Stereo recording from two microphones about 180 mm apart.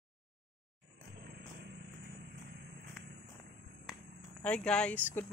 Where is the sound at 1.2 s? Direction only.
70° right (ahead or behind).